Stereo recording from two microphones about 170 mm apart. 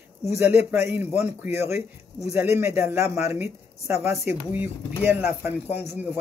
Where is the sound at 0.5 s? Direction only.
10° right (ahead or behind).